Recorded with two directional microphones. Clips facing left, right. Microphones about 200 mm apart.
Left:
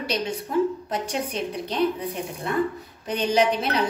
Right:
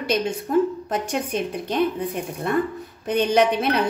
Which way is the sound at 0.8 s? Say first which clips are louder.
Right 2 dB; 50° right (ahead or behind).